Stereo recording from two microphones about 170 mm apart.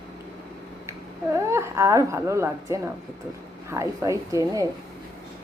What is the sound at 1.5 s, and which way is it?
A woman's voice, 15° right (ahead or behind).